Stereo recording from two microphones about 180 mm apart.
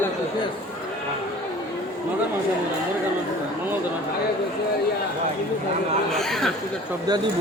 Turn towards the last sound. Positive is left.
turn(degrees=0)  # may be behind; listen again after turning